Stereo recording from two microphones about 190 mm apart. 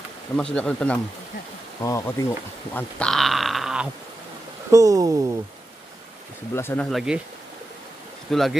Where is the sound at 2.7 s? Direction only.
5° left (ahead or behind).